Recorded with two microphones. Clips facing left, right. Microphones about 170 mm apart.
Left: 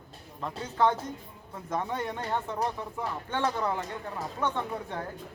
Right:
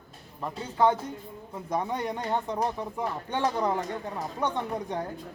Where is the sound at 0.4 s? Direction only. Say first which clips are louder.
Right 2 dB; 10° right (ahead or behind).